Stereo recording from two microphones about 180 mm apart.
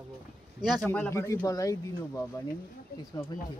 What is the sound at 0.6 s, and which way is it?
Speech, centre (ahead or behind).